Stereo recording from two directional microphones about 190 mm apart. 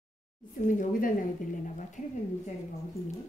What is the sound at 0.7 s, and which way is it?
A woman's voice, 45° left (ahead or behind).